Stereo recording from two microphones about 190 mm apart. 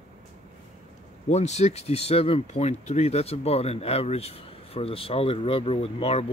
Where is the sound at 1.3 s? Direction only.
35° left (ahead or behind).